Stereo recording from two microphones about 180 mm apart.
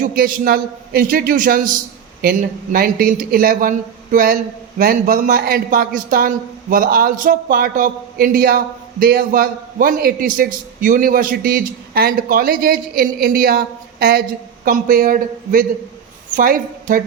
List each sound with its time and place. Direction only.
0.0 s a man's voice: 50° right (ahead or behind)